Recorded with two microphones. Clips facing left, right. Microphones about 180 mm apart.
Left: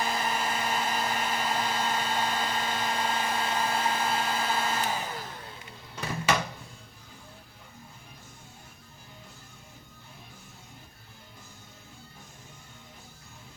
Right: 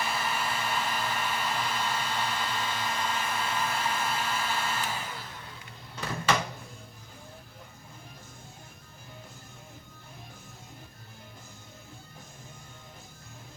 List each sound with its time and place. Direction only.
0.0 s hair dryer: 40° left (ahead or behind)